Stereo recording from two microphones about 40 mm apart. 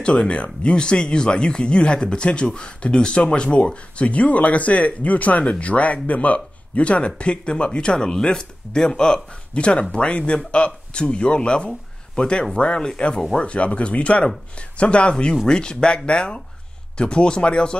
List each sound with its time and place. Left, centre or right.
0.0 s speech: left
9.5 s speech: left
13.4 s speech: left